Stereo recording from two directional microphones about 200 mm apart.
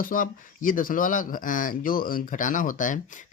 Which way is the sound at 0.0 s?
45° left (ahead or behind).